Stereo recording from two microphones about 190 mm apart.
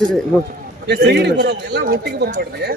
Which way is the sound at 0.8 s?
60° right (ahead or behind).